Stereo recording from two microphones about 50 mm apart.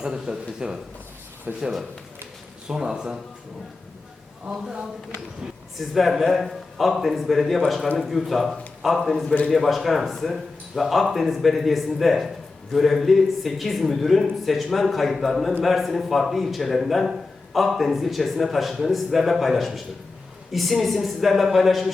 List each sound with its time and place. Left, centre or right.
0.0 s speech: centre
2.6 s speech: centre
5.7 s a man's voice: centre